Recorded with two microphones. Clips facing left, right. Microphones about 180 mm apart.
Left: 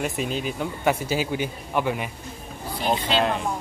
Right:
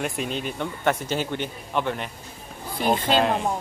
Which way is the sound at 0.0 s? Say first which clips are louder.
Left 1 dB; centre (ahead or behind).